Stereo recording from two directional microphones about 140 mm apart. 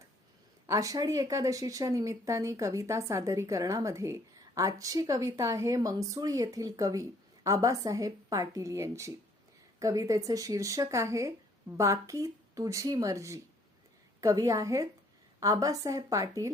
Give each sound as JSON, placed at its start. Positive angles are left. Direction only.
{"t": 0.7, "sound": "speech", "side_deg": -25}